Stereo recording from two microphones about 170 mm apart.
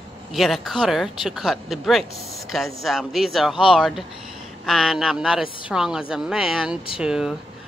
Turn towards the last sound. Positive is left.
turn(degrees=-5)  # may be behind; listen again after turning